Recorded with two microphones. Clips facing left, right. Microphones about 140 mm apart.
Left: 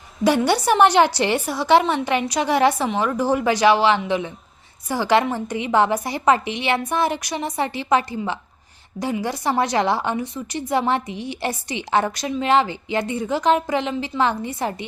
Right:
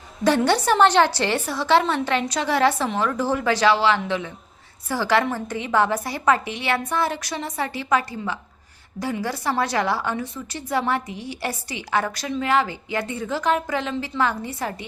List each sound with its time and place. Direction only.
0.3 s a woman's voice: 10° left (ahead or behind)